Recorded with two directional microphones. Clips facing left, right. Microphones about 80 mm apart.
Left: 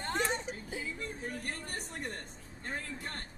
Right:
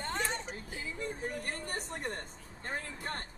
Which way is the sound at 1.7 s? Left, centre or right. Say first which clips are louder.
Right 2 dB; right.